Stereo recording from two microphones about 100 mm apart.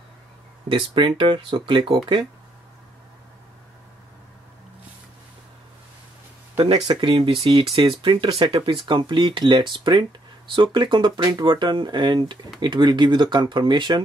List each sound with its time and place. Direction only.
0.7 s speech: 60° right (ahead or behind)
6.6 s speech: 55° right (ahead or behind)